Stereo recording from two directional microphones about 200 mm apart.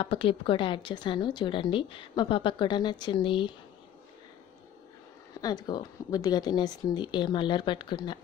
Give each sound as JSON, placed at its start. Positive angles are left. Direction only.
{"t": 0.0, "sound": "a woman's voice", "side_deg": 25}
{"t": 5.4, "sound": "a woman's voice", "side_deg": 20}